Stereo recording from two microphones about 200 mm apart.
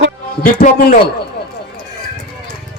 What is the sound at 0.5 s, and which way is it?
Speech, 40° left (ahead or behind).